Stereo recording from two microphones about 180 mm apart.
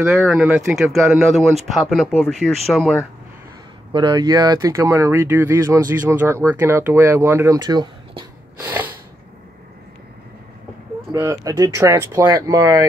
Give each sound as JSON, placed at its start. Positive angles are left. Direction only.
{"t": 0.1, "sound": "speech", "side_deg": 0}
{"t": 3.9, "sound": "speech", "side_deg": -25}
{"t": 8.5, "sound": "snort", "side_deg": -10}
{"t": 11.1, "sound": "speech", "side_deg": -15}